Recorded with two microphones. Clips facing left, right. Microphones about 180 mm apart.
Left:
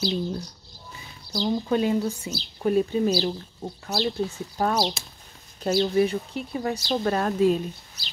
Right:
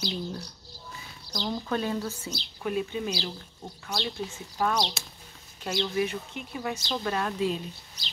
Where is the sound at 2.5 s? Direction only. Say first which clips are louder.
Left 8 dB; 40° left (ahead or behind).